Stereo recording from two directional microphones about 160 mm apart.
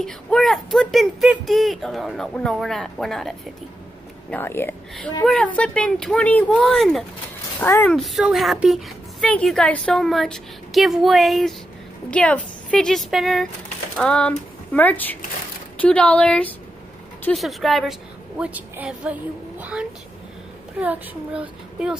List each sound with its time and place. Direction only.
0.0 s a woman's voice: centre (ahead or behind)
4.3 s a woman's voice: 15° left (ahead or behind)
7.6 s speech: 15° left (ahead or behind)
7.9 s a woman's voice: centre (ahead or behind)
19.6 s vehicle: 5° right (ahead or behind)
20.8 s speech: 10° right (ahead or behind)